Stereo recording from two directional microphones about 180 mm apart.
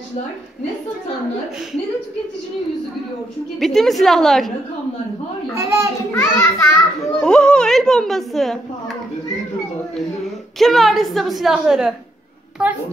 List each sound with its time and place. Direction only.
3.5 s a woman's voice: centre (ahead or behind)
5.5 s a child's voice: 15° right (ahead or behind)
6.3 s a child's voice: 15° left (ahead or behind)
7.2 s a sound: 5° left (ahead or behind)
10.6 s a woman's voice: centre (ahead or behind)